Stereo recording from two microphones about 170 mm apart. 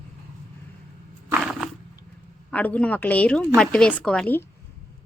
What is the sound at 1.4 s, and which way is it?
Cat, centre (ahead or behind).